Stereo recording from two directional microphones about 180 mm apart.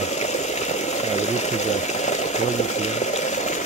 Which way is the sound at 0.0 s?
40° left (ahead or behind).